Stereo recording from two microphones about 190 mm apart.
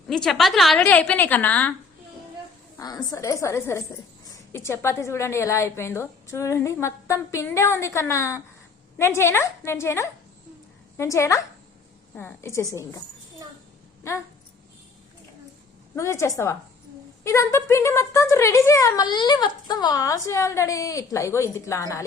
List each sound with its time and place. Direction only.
0.1 s speech: centre (ahead or behind)
2.7 s speech: 20° left (ahead or behind)
16.0 s speech: 15° left (ahead or behind)